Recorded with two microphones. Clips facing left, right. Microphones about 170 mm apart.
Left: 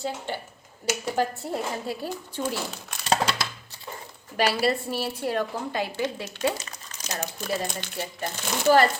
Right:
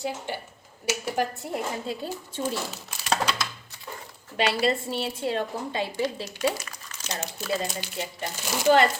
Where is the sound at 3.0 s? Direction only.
30° left (ahead or behind).